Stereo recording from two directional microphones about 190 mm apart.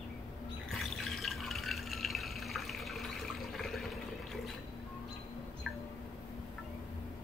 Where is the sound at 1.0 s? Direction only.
Centre (ahead or behind).